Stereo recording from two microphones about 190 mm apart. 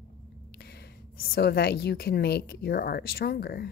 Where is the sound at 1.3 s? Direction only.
55° left (ahead or behind).